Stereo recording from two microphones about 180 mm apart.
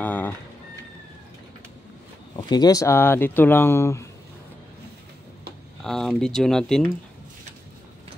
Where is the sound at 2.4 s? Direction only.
20° left (ahead or behind).